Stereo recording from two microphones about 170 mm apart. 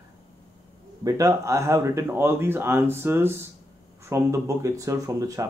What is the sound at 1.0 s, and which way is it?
A man's voice, 20° right (ahead or behind).